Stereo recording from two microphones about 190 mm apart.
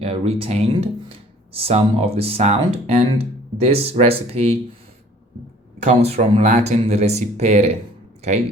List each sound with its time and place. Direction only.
0.0 s speech: 30° right (ahead or behind)
5.8 s speech: 35° right (ahead or behind)